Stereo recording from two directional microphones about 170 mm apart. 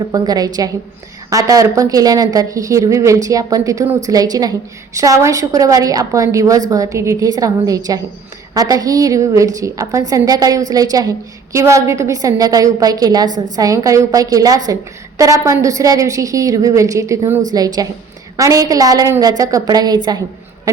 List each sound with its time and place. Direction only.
0.1 s a woman's voice: 20° right (ahead or behind)